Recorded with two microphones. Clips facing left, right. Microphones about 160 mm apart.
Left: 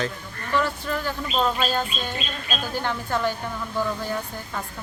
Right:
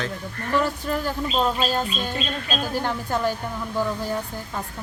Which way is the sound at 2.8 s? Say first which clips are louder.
Left 1 dB; 35° right (ahead or behind).